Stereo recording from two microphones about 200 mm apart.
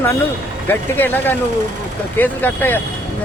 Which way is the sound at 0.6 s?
10° left (ahead or behind).